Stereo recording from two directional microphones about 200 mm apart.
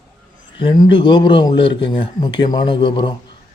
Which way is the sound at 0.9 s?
25° left (ahead or behind).